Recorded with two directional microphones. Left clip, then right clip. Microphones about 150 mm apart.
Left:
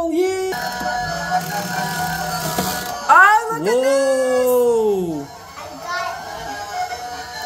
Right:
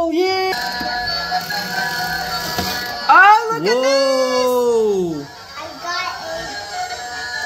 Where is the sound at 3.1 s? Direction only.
60° right (ahead or behind).